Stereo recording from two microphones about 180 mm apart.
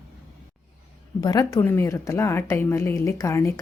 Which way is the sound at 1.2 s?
20° left (ahead or behind).